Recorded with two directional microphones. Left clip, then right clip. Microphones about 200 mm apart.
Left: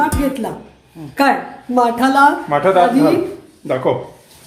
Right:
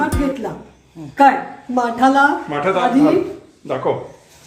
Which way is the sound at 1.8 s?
25° left (ahead or behind).